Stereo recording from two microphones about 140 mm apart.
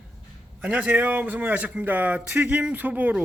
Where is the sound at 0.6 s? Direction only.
10° right (ahead or behind).